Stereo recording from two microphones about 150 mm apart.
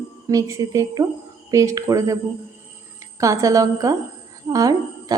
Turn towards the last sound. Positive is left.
turn(degrees=-25)  # may be behind; listen again after turning